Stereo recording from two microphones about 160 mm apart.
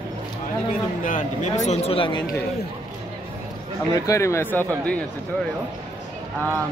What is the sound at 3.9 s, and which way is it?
Speech, 20° left (ahead or behind).